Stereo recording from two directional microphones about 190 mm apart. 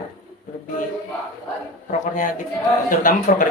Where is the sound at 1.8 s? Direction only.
45° left (ahead or behind).